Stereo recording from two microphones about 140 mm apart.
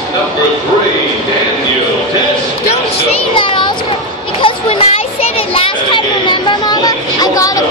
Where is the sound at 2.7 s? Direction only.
40° left (ahead or behind).